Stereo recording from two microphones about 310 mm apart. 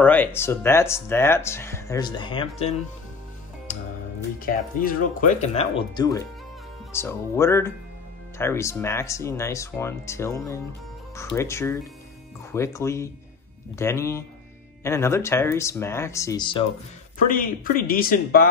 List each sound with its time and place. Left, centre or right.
0.0 s speech: centre
4.5 s speech: left
17.2 s speech: left